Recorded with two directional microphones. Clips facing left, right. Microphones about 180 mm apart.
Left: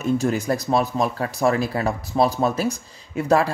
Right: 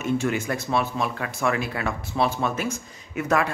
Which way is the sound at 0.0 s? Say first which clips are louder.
Left 3 dB; 35° left (ahead or behind).